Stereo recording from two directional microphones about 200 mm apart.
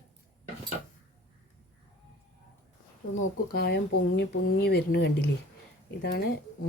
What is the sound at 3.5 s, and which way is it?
Speech, 50° left (ahead or behind).